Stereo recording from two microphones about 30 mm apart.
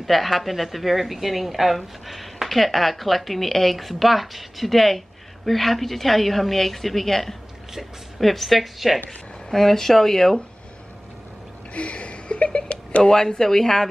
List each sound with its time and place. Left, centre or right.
0.0 s speech: centre
9.5 s speech: centre
11.7 s a sound: left
13.1 s speech: centre